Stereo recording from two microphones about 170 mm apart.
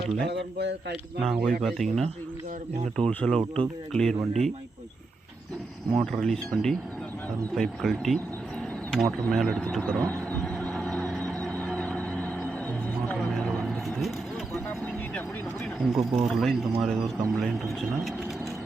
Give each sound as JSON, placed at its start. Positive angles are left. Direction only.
{"t": 0.3, "sound": "speech", "side_deg": -90}
{"t": 1.2, "sound": "speech", "side_deg": 0}
{"t": 5.9, "sound": "speech", "side_deg": 0}
{"t": 9.2, "sound": "speech", "side_deg": 5}
{"t": 10.1, "sound": "music", "side_deg": 10}
{"t": 13.1, "sound": "vehicle", "side_deg": 5}
{"t": 15.8, "sound": "speech", "side_deg": 0}